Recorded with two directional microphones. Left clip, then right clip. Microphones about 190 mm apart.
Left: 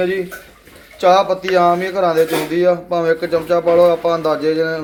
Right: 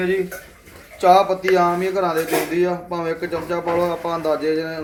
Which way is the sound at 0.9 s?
40° left (ahead or behind).